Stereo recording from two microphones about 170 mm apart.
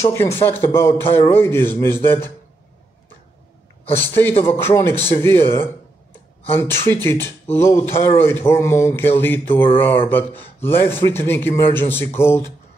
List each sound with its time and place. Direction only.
0.1 s speech: 15° left (ahead or behind)
4.3 s speech: 40° left (ahead or behind)
4.6 s speech: 15° left (ahead or behind)